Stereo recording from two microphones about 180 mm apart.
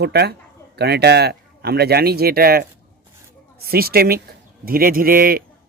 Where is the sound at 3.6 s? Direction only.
55° right (ahead or behind).